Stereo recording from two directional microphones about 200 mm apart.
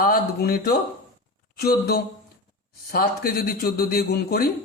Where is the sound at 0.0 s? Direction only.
50° left (ahead or behind).